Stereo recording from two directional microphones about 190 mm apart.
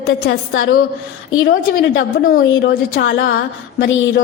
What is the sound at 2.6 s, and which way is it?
Speech, 60° left (ahead or behind).